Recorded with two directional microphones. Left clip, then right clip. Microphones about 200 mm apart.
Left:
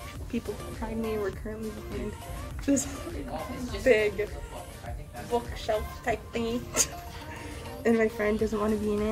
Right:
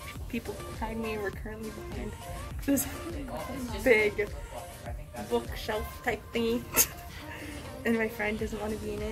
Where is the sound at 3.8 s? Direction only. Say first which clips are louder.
Left 1 dB; 30° right (ahead or behind).